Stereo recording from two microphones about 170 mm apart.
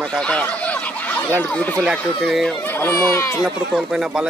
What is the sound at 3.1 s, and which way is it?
Speech, 15° left (ahead or behind).